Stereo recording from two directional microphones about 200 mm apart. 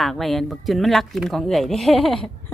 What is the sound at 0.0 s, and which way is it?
Speech, centre (ahead or behind).